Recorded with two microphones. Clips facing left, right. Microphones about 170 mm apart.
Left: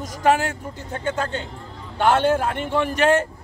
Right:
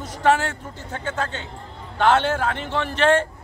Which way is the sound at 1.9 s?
15° left (ahead or behind).